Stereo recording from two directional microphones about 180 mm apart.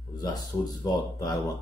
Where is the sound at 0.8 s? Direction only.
20° left (ahead or behind).